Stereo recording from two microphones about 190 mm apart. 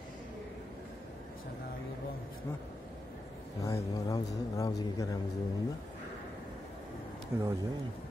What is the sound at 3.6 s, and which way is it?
A man's voice, 15° left (ahead or behind).